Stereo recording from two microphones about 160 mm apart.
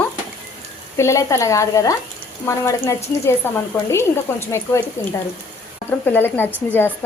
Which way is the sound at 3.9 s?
15° left (ahead or behind).